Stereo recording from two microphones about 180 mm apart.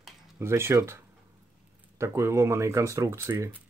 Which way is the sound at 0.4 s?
15° right (ahead or behind).